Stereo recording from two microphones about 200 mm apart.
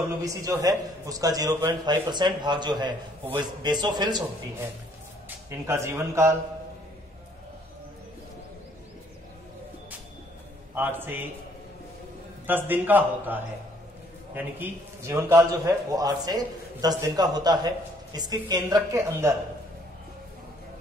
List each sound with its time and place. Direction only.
0.2 s a man's voice: 15° right (ahead or behind)
10.7 s a man's voice: 10° right (ahead or behind)
12.4 s a man's voice: 10° right (ahead or behind)